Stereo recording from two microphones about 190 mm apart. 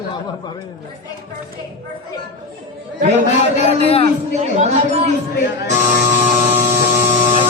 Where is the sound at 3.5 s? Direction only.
35° left (ahead or behind).